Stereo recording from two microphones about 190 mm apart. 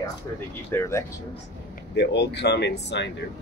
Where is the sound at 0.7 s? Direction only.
15° left (ahead or behind).